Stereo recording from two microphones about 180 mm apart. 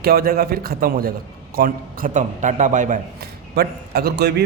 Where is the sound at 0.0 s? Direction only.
60° right (ahead or behind).